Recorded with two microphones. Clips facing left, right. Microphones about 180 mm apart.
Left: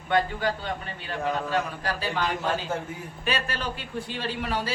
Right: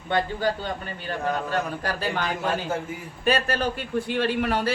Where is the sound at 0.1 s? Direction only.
35° right (ahead or behind).